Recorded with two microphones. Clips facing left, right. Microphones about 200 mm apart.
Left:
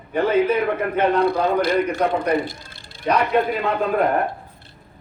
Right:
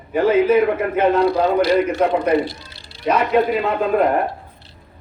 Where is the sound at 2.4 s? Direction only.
50° left (ahead or behind).